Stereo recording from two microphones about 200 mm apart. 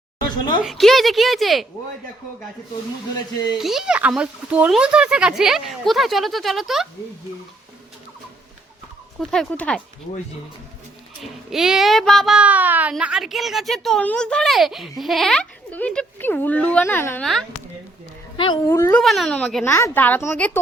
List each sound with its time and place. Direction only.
0.2 s a sound: 20° left (ahead or behind)
0.6 s a child's voice: centre (ahead or behind)
3.6 s a child's voice: centre (ahead or behind)
9.3 s a child's voice: 5° left (ahead or behind)
11.2 s a child's voice: centre (ahead or behind)
18.3 s a child's voice: 25° left (ahead or behind)
18.7 s a child's voice: 10° left (ahead or behind)
19.6 s speech: 15° left (ahead or behind)